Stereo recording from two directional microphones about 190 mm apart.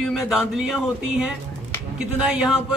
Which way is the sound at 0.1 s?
Centre (ahead or behind).